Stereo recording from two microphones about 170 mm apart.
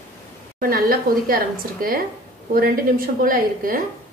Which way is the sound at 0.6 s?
60° right (ahead or behind).